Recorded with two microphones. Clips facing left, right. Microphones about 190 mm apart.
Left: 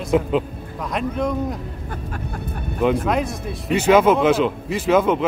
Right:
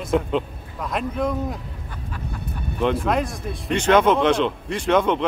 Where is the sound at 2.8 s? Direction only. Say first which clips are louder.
Left 2 dB; centre (ahead or behind).